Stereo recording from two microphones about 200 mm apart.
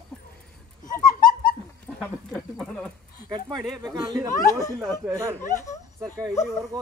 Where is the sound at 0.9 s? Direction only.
45° left (ahead or behind).